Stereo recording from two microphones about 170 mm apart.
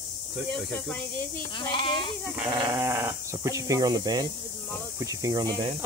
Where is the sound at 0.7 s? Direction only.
10° left (ahead or behind).